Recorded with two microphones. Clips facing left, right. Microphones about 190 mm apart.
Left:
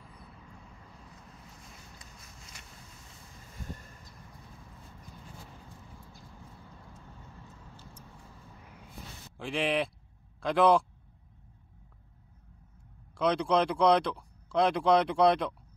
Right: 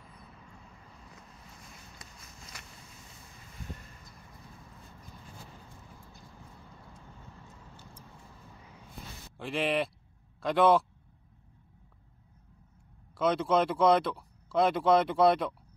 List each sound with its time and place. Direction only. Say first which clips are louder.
2.0 s a sound: right 2 dB; 85° right
9.4 s speech: even; centre (ahead or behind)
13.2 s speech: even; centre (ahead or behind)